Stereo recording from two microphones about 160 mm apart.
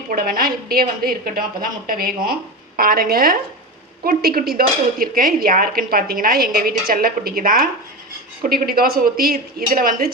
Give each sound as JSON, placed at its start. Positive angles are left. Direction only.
{"t": 0.1, "sound": "a woman's voice", "side_deg": -65}
{"t": 2.7, "sound": "dishes", "side_deg": -65}